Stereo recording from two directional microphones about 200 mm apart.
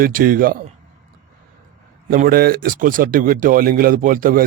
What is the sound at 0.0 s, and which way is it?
Speech, 45° right (ahead or behind).